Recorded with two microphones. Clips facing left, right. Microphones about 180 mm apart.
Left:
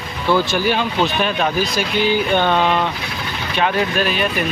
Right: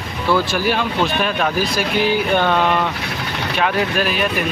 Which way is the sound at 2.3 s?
5° right (ahead or behind).